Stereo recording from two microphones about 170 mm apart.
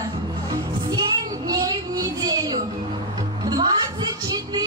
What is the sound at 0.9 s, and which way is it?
Child singing, 25° right (ahead or behind).